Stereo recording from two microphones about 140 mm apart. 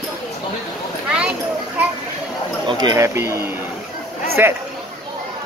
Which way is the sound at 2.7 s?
30° right (ahead or behind).